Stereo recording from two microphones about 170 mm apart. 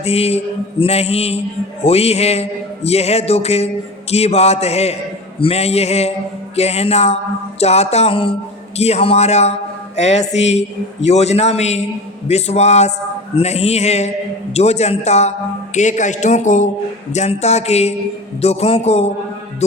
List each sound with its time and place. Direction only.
0.0 s a man's voice: 35° left (ahead or behind)